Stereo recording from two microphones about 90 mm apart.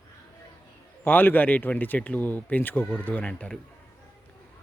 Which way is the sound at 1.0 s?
20° left (ahead or behind).